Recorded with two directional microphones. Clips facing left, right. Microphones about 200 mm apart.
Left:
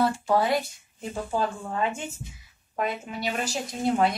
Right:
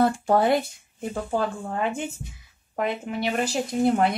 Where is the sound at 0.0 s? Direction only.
50° right (ahead or behind).